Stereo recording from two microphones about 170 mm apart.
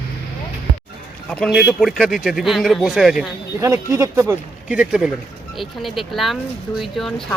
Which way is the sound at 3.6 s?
20° right (ahead or behind).